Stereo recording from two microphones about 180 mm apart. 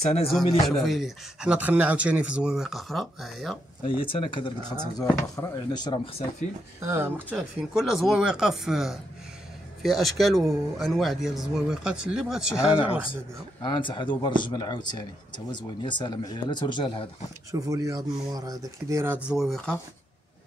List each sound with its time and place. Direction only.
0.0 s speech: 35° left (ahead or behind)
0.7 s speech: centre (ahead or behind)
3.8 s speech: 30° left (ahead or behind)
6.8 s speech: 15° right (ahead or behind)
13.6 s speech: 25° left (ahead or behind)
17.5 s speech: 20° right (ahead or behind)
19.2 s speech: centre (ahead or behind)